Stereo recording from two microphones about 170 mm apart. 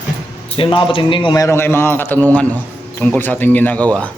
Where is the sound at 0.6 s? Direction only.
30° left (ahead or behind).